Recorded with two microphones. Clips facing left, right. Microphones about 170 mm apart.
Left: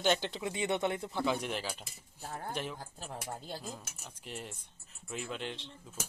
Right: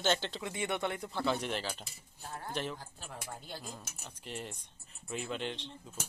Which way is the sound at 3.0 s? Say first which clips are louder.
Left 4 dB; 35° left (ahead or behind).